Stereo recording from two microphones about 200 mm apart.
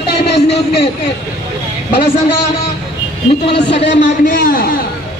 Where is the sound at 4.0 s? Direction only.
45° left (ahead or behind).